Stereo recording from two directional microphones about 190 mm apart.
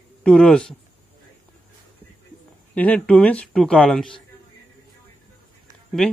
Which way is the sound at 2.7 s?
5° left (ahead or behind).